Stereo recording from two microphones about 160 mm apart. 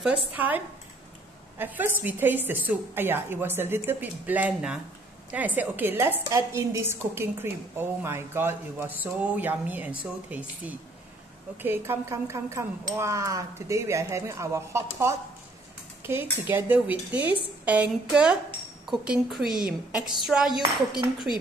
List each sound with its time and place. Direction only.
0.3 s a woman's voice: 10° right (ahead or behind)
1.6 s a woman's voice: 10° right (ahead or behind)